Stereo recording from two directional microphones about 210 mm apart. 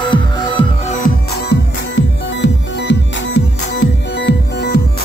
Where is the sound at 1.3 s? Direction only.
50° left (ahead or behind).